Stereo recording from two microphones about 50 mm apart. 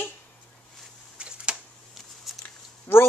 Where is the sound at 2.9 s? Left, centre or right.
Left.